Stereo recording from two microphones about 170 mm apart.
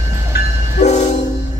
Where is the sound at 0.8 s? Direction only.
40° left (ahead or behind).